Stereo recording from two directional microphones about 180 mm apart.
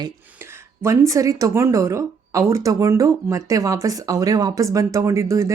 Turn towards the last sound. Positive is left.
turn(degrees=-15)  # may be behind; listen again after turning